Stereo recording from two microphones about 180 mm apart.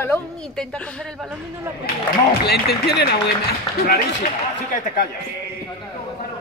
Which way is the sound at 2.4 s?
60° left (ahead or behind).